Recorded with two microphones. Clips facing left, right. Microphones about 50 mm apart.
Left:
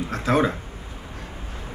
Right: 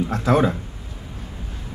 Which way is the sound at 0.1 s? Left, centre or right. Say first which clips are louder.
Right 1 dB; left.